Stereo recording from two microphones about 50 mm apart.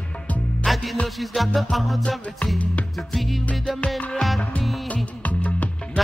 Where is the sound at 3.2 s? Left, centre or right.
Centre.